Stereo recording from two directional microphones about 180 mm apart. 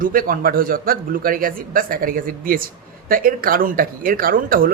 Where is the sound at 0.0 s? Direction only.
50° right (ahead or behind).